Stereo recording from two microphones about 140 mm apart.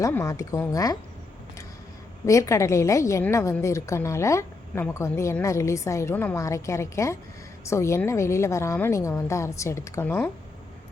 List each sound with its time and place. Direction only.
0.0 s a woman's voice: 20° left (ahead or behind)
2.2 s a woman's voice: 20° left (ahead or behind)